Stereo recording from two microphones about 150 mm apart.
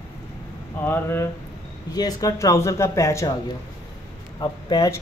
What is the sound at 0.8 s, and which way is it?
Speech, 15° left (ahead or behind).